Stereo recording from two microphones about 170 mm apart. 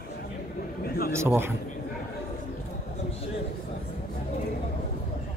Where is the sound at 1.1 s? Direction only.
15° right (ahead or behind).